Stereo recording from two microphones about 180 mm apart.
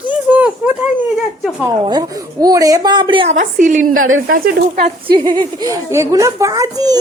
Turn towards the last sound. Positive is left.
turn(degrees=-20)  # may be behind; listen again after turning